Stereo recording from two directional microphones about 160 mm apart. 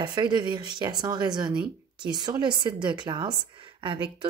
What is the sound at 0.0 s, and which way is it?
Speech, 30° right (ahead or behind).